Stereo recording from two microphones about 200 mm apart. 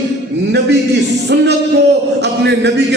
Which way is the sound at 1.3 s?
60° right (ahead or behind).